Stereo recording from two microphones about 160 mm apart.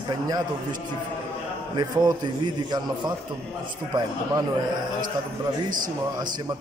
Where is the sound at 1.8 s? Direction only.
25° right (ahead or behind).